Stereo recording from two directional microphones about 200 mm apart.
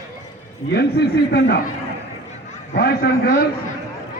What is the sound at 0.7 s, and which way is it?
Speech, 55° left (ahead or behind).